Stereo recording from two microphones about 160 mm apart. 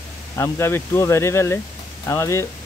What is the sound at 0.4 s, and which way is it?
Speech, 15° left (ahead or behind).